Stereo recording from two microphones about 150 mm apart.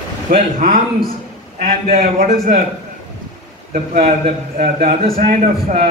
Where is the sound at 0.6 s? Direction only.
60° right (ahead or behind).